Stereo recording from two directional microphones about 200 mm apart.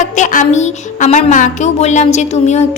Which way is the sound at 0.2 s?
40° left (ahead or behind).